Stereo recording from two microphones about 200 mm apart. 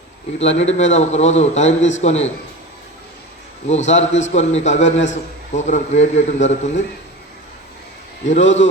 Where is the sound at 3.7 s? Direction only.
35° left (ahead or behind).